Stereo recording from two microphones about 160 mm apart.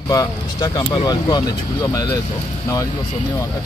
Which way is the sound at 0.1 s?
25° left (ahead or behind).